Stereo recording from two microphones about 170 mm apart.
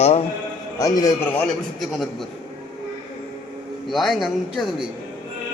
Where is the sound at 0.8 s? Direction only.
20° left (ahead or behind).